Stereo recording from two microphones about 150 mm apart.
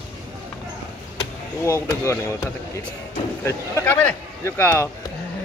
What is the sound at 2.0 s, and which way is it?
Speech, 20° left (ahead or behind).